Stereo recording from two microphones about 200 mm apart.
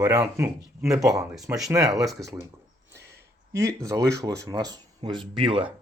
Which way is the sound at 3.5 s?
15° right (ahead or behind).